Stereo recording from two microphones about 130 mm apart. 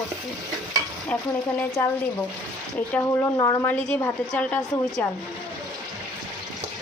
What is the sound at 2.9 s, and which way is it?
Speech, 20° left (ahead or behind).